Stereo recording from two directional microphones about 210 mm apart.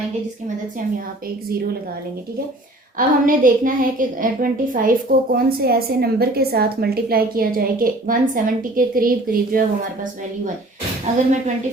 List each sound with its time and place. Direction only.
3.2 s a woman's voice: 40° right (ahead or behind)